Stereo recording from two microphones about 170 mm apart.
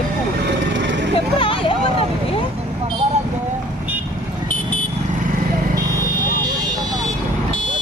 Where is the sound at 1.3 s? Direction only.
30° left (ahead or behind).